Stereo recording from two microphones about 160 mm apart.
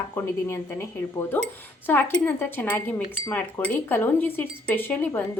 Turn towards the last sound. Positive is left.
turn(degrees=15)  # may be behind; listen again after turning